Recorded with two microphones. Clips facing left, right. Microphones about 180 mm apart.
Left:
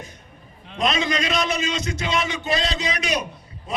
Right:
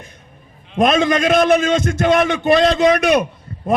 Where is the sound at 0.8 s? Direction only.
50° right (ahead or behind).